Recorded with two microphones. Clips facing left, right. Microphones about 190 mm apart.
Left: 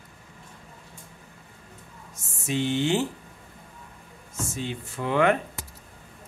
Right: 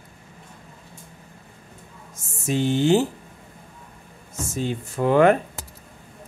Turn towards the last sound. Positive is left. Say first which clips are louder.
# right 6 dB
turn(degrees=-40)  # may be behind; listen again after turning